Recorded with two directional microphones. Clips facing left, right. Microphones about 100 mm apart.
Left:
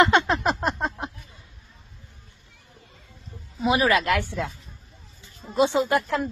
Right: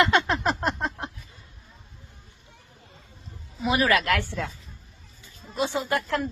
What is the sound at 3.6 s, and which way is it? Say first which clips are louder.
Speech: left 2 dB; 20° left (ahead or behind).